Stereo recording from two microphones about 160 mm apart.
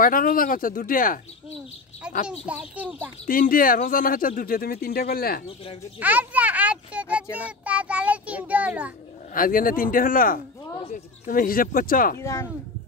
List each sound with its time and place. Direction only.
0.0 s speech: 60° left (ahead or behind)
2.6 s a child's voice: 5° right (ahead or behind)
3.3 s speech: 60° left (ahead or behind)
5.9 s a child's voice: 10° right (ahead or behind)
9.3 s speech: 60° left (ahead or behind)
12.2 s speech: 15° left (ahead or behind)